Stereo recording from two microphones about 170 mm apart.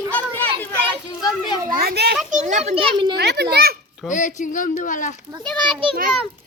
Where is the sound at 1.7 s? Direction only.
65° right (ahead or behind).